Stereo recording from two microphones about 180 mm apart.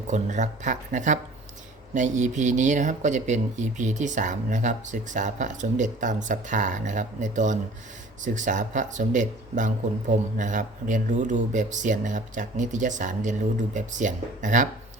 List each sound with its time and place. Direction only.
0.1 s speech: 40° right (ahead or behind)